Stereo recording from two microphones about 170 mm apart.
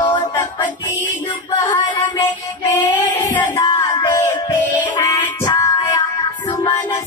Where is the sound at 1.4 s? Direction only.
25° left (ahead or behind).